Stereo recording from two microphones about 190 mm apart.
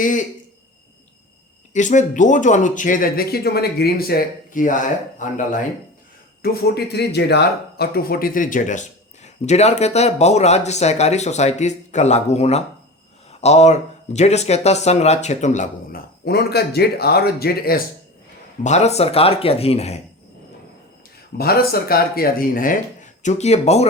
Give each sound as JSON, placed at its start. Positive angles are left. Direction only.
{"t": 0.0, "sound": "speech", "side_deg": 45}
{"t": 1.7, "sound": "speech", "side_deg": 40}
{"t": 6.4, "sound": "speech", "side_deg": 55}
{"t": 16.2, "sound": "speech", "side_deg": 55}
{"t": 18.6, "sound": "speech", "side_deg": 35}
{"t": 21.3, "sound": "speech", "side_deg": 55}